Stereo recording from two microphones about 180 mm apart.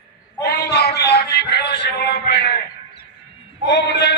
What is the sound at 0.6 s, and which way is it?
Music, 65° left (ahead or behind).